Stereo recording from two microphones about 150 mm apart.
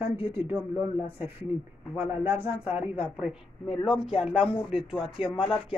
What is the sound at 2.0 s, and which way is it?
Speech, 10° right (ahead or behind).